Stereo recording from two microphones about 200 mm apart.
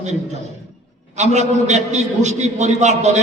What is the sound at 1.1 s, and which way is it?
A man's voice, 35° right (ahead or behind).